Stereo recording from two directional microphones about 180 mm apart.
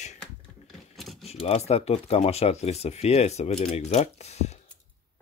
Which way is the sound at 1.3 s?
35° left (ahead or behind).